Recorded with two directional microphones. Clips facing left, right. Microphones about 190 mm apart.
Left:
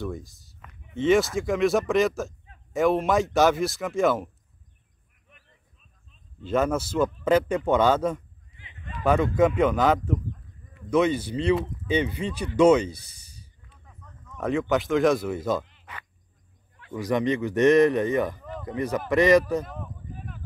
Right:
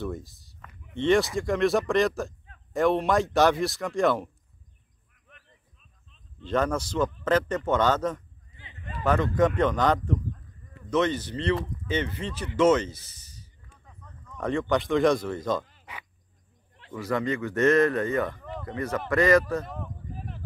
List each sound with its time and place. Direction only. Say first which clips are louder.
0.0 s speech: even; centre (ahead or behind)
6.4 s a man's voice: left 2 dB; 5° left (ahead or behind)
8.5 s a sound: even; 30° right (ahead or behind)
9.0 s a man's voice: left 2 dB; 10° left (ahead or behind)
15.8 s frog: even; 10° right (ahead or behind)
16.9 s a man's voice: left 3 dB; 20° left (ahead or behind)